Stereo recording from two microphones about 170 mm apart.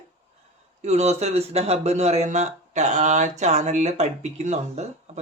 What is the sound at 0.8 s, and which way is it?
A man's voice, 40° right (ahead or behind).